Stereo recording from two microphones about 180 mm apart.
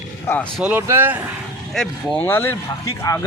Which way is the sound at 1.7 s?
5° left (ahead or behind).